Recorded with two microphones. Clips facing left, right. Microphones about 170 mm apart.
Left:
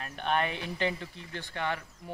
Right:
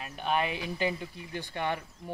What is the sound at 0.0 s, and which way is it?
Speech, 5° right (ahead or behind).